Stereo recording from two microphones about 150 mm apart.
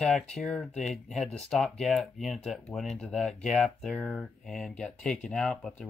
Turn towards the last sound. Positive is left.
turn(degrees=0)  # may be behind; listen again after turning